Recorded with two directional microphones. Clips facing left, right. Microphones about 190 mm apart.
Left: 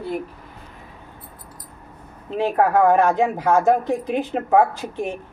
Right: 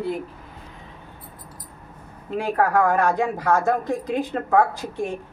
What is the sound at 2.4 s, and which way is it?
Speech, 20° left (ahead or behind).